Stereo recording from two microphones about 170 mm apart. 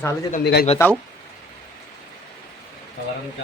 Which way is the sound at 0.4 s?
65° left (ahead or behind).